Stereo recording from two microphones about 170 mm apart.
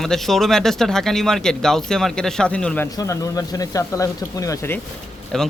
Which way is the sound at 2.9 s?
20° left (ahead or behind).